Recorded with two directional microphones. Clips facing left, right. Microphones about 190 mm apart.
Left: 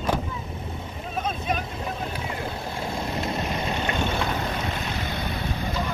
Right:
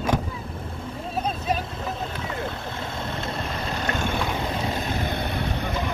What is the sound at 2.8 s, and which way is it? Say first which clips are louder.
Vehicle: left 4 dB; 10° left (ahead or behind).